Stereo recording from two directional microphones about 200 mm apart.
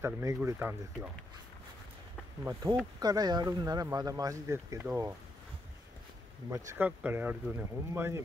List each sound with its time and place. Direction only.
0.0 s speech: 15° right (ahead or behind)
2.4 s speech: 15° right (ahead or behind)
6.5 s speech: 10° right (ahead or behind)